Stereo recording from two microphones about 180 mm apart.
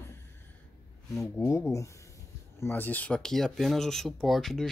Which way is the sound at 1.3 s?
15° left (ahead or behind).